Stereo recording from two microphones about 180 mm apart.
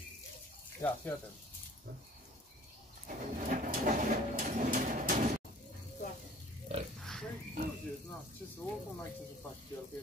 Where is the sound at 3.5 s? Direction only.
45° right (ahead or behind).